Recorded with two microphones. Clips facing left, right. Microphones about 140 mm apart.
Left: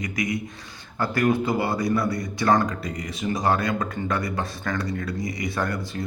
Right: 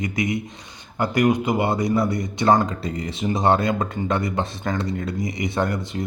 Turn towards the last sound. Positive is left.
turn(degrees=-20)  # may be behind; listen again after turning